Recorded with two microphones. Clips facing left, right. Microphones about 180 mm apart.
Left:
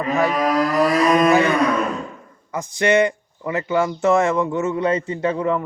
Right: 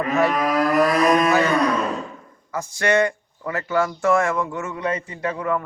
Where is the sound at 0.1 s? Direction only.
Centre (ahead or behind).